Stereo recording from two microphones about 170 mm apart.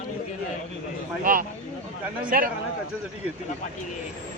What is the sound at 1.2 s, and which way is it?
Speech, 55° right (ahead or behind).